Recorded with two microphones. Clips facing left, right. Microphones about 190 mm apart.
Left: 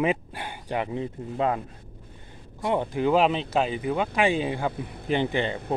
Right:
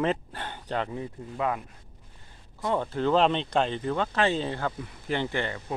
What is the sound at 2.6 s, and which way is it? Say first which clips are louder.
Speech: left 2 dB; 15° left (ahead or behind).